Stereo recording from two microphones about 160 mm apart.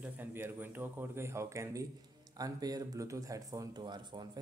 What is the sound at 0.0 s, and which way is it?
Speech, 15° right (ahead or behind).